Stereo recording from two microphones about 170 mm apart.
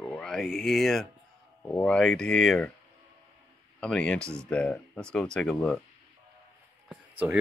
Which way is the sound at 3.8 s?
5° left (ahead or behind).